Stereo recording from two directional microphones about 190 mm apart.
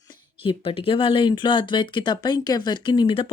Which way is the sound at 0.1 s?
30° left (ahead or behind).